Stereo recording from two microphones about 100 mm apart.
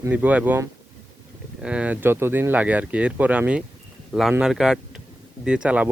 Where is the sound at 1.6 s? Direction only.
10° right (ahead or behind).